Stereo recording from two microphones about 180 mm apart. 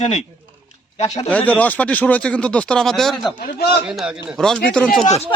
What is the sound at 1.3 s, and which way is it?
Speech, 10° left (ahead or behind).